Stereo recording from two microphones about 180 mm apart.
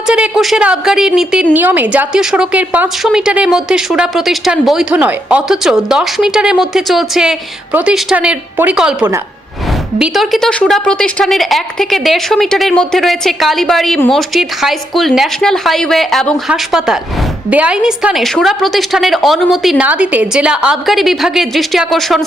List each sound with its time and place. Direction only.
0.1 s a woman's voice: 5° right (ahead or behind)